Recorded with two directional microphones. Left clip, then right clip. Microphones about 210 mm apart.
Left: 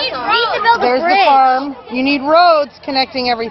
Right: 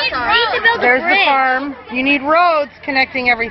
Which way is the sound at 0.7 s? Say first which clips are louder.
Left 4 dB; 35° left (ahead or behind).